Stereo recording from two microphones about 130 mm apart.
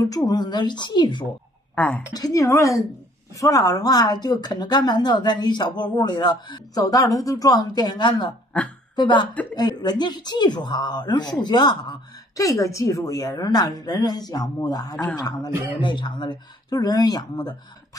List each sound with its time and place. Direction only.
0.1 s a woman's voice: 30° left (ahead or behind)
1.8 s a woman's voice: 10° left (ahead or behind)
2.1 s a woman's voice: 25° left (ahead or behind)